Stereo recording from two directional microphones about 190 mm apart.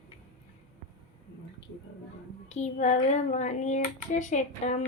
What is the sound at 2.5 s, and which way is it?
Speech, 40° left (ahead or behind).